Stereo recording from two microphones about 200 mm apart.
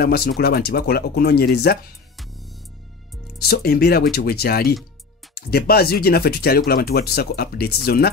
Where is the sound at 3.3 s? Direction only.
50° left (ahead or behind).